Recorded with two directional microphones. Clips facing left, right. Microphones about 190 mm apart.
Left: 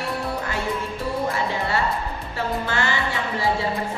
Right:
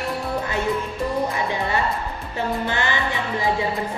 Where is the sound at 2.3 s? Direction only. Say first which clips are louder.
Right 1 dB; 20° right (ahead or behind).